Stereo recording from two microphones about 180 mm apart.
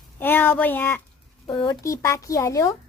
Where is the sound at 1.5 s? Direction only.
25° left (ahead or behind).